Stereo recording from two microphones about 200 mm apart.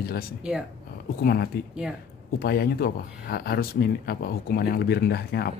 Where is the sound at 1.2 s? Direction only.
50° left (ahead or behind).